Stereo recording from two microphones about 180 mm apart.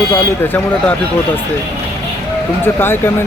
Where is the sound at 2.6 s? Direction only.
10° left (ahead or behind).